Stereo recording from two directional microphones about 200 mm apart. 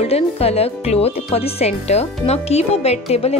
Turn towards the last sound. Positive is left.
turn(degrees=30)  # may be behind; listen again after turning